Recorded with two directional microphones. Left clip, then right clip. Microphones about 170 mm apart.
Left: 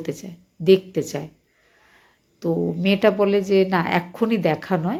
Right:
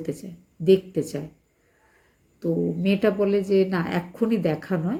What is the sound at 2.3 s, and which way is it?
A woman's voice, 20° right (ahead or behind).